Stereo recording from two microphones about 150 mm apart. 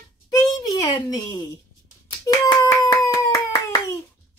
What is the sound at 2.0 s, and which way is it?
Hands, 25° left (ahead or behind).